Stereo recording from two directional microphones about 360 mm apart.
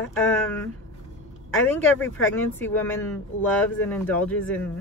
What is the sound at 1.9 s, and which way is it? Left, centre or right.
Speech, centre.